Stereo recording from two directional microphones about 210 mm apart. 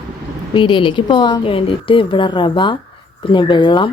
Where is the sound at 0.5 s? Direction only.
25° left (ahead or behind).